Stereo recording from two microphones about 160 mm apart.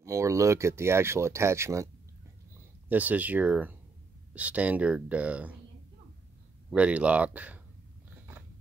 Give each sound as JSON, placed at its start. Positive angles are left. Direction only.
{"t": 0.0, "sound": "speech", "side_deg": -20}
{"t": 2.9, "sound": "speech", "side_deg": -10}
{"t": 6.7, "sound": "speech", "side_deg": -10}